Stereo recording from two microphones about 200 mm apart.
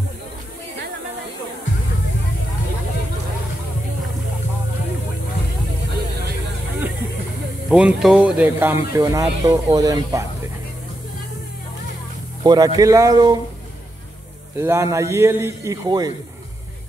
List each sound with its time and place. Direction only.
7.7 s speech: 5° right (ahead or behind)
12.4 s speech: 20° right (ahead or behind)
14.6 s speech: 15° right (ahead or behind)